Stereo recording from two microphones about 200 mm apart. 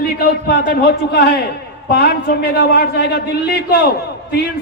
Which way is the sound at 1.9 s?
55° left (ahead or behind).